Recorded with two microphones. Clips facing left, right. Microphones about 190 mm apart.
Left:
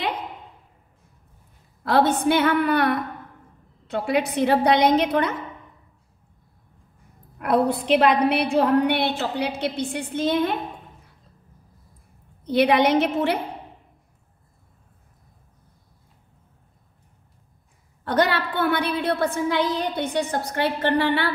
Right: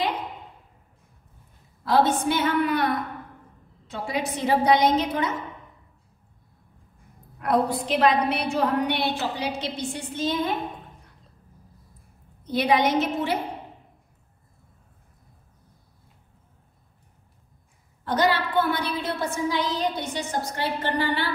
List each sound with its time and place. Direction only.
2.0 s a woman's voice: 65° left (ahead or behind)
7.3 s a woman's voice: 65° left (ahead or behind)
12.4 s a woman's voice: 65° left (ahead or behind)
18.0 s a woman's voice: 60° left (ahead or behind)